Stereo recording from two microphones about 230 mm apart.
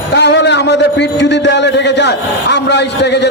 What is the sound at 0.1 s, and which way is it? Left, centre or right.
A man's voice, left.